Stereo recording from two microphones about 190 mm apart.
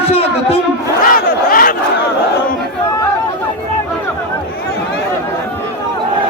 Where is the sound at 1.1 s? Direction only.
50° left (ahead or behind).